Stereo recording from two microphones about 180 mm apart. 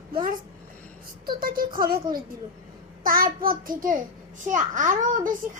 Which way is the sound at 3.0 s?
55° right (ahead or behind).